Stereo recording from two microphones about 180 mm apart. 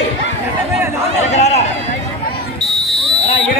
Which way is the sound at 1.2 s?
40° left (ahead or behind).